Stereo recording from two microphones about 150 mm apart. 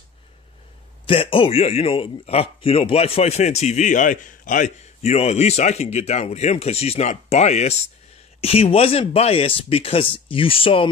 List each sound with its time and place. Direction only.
1.0 s a man's voice: 35° left (ahead or behind)